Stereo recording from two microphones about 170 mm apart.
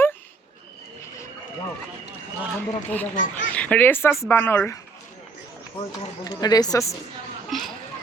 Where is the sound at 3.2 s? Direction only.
50° left (ahead or behind).